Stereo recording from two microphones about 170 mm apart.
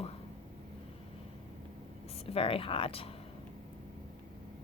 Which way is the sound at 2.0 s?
35° left (ahead or behind).